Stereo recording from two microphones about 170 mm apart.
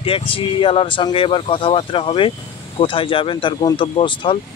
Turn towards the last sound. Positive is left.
turn(degrees=30)  # may be behind; listen again after turning